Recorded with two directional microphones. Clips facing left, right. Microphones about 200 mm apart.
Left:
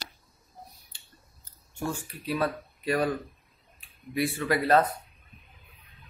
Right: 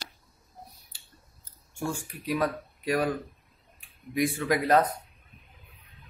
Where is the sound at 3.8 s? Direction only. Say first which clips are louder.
Right 2 dB; 15° right (ahead or behind).